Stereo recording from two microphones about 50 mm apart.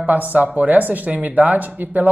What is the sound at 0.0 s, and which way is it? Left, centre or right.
Speech, right.